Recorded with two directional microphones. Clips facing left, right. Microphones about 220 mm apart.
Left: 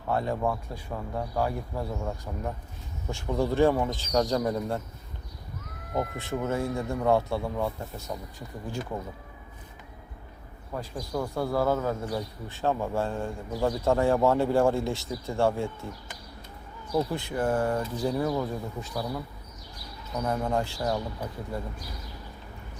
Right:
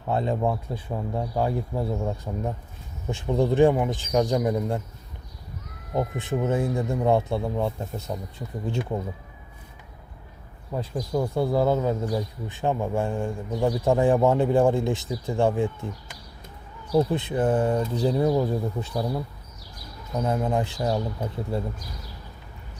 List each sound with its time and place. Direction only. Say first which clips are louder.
0.1 s speech: right 3 dB; 20° right (ahead or behind)
5.9 s speech: right 4 dB; 20° right (ahead or behind)
10.7 s speech: right 5 dB; 15° right (ahead or behind)
16.9 s speech: right 5 dB; 20° right (ahead or behind)